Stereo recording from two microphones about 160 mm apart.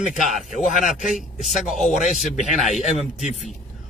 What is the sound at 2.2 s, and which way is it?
Speech, 50° left (ahead or behind).